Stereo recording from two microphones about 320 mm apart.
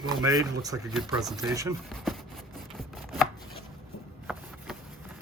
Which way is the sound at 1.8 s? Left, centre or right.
Centre.